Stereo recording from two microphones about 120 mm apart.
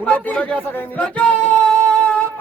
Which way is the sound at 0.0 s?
10° left (ahead or behind).